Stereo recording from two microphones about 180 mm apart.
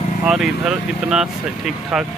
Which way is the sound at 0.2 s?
5° right (ahead or behind).